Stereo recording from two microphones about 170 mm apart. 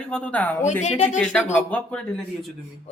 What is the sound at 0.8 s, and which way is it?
Speech, 45° left (ahead or behind).